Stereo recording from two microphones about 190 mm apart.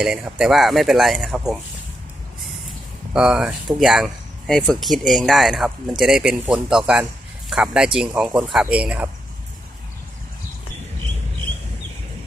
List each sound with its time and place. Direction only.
0.0 s speech: 5° right (ahead or behind)
3.1 s speech: 5° right (ahead or behind)